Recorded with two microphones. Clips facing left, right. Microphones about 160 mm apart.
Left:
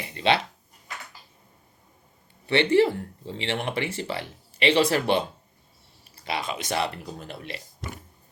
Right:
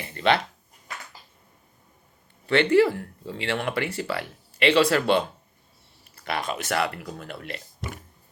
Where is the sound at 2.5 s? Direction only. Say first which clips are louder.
Right 1 dB; 20° left (ahead or behind).